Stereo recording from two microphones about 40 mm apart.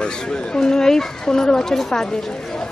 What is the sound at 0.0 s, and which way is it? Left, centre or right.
A man's voice, left.